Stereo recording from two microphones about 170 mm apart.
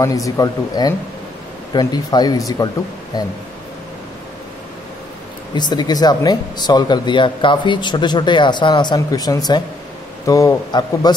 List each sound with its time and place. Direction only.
0.0 s speech: 20° left (ahead or behind)
5.5 s speech: 25° left (ahead or behind)